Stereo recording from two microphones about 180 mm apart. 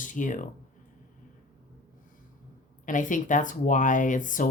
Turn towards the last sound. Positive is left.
turn(degrees=45)  # may be behind; listen again after turning